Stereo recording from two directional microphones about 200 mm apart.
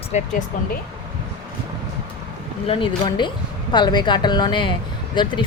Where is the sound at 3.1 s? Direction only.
20° left (ahead or behind).